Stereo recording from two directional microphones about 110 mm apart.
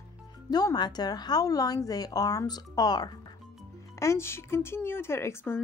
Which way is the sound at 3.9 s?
25° left (ahead or behind).